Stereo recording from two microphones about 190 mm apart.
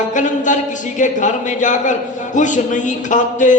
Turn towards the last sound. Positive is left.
turn(degrees=40)  # may be behind; listen again after turning